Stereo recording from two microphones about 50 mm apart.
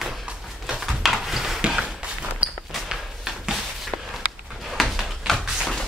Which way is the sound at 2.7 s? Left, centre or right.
Centre.